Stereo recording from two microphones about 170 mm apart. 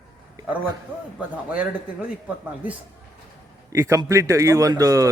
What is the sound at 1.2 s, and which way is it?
Speech, 10° right (ahead or behind).